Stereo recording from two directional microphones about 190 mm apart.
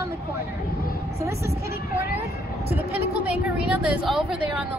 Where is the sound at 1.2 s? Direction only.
15° right (ahead or behind).